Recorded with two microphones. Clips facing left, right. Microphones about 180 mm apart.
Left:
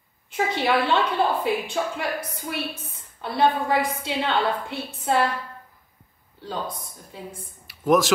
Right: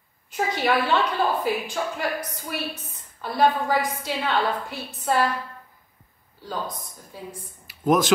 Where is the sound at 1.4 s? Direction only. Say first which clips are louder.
Left 1 dB; 25° left (ahead or behind).